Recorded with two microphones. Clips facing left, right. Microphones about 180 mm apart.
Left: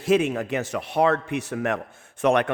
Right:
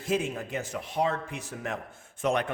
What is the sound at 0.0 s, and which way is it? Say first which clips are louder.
A man's voice: left 8 dB; 75° left (ahead or behind).